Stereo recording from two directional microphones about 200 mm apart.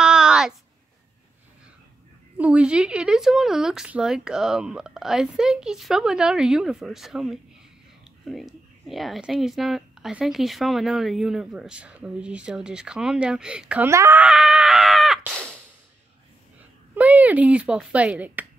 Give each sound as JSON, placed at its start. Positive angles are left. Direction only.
{"t": 0.0, "sound": "a sound", "side_deg": -5}
{"t": 2.3, "sound": "speech", "side_deg": -5}
{"t": 16.9, "sound": "speech", "side_deg": -10}